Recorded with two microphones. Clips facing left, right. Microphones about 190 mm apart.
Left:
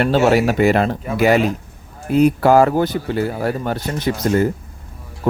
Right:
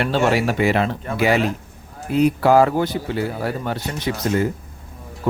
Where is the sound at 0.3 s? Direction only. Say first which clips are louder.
Left 4 dB; 45° left (ahead or behind).